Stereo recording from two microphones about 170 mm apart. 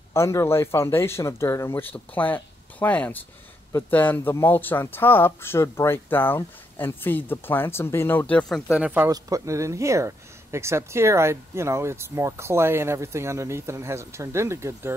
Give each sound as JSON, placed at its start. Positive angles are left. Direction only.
{"t": 0.1, "sound": "speech", "side_deg": 15}
{"t": 8.7, "sound": "speech", "side_deg": -10}
{"t": 9.1, "sound": "speech", "side_deg": -20}